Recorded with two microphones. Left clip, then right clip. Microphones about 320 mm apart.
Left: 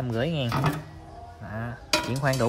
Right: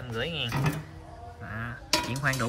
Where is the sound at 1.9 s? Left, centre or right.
Centre.